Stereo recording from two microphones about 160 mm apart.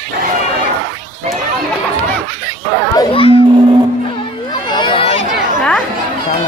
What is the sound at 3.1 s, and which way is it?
Speech, 35° left (ahead or behind).